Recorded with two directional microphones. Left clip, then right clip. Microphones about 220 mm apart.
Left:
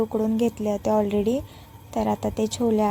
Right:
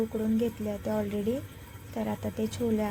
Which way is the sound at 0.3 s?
40° left (ahead or behind).